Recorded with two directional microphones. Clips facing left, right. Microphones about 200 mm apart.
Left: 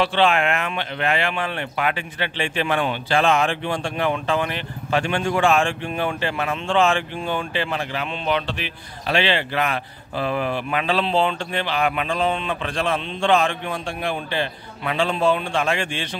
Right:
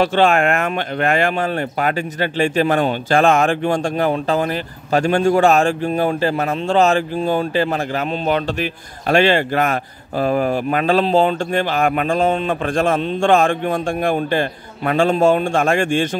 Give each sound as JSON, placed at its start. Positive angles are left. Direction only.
{"t": 0.0, "sound": "speech", "side_deg": -45}